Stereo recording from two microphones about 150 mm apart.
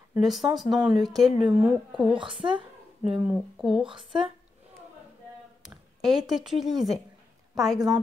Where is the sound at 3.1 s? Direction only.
5° right (ahead or behind).